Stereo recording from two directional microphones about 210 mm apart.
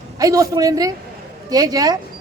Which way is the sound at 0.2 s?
15° right (ahead or behind).